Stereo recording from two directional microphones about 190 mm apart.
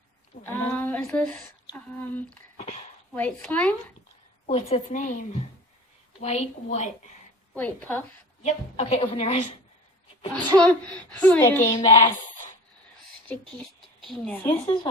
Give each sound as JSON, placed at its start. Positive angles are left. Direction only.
{"t": 0.4, "sound": "speech", "side_deg": 10}
{"t": 4.4, "sound": "speech", "side_deg": 35}
{"t": 7.5, "sound": "speech", "side_deg": 10}
{"t": 8.4, "sound": "speech", "side_deg": 35}
{"t": 10.6, "sound": "speech", "side_deg": 5}
{"t": 11.7, "sound": "speech", "side_deg": 20}
{"t": 13.5, "sound": "speech", "side_deg": 5}